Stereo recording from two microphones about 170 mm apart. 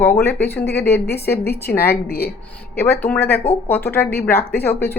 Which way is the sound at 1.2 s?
10° left (ahead or behind).